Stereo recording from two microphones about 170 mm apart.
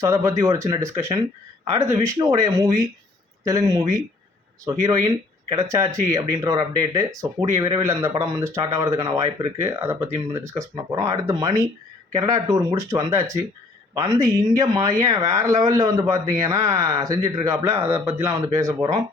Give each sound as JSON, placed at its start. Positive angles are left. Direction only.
{"t": 0.0, "sound": "speech", "side_deg": -20}